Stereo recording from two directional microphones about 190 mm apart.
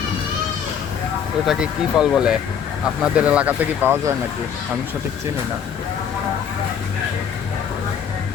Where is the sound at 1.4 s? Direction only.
Centre (ahead or behind).